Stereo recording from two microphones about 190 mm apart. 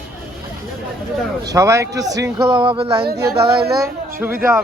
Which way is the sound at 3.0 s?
55° right (ahead or behind).